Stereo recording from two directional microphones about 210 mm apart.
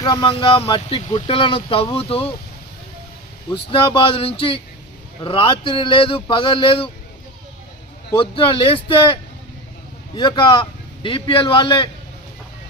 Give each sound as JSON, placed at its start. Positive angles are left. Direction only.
{"t": 0.0, "sound": "speech", "side_deg": 20}
{"t": 3.5, "sound": "speech", "side_deg": 25}
{"t": 8.2, "sound": "speech", "side_deg": 25}
{"t": 10.2, "sound": "speech", "side_deg": 25}